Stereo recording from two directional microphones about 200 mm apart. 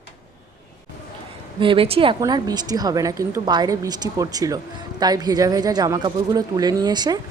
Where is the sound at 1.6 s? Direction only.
25° right (ahead or behind).